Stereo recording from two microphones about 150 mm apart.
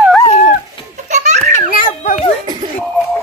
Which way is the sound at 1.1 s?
50° right (ahead or behind).